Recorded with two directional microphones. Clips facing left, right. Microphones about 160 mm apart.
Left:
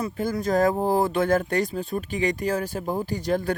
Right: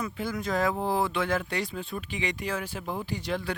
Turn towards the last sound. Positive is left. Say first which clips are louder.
# left 7 dB
turn(degrees=45)  # may be behind; listen again after turning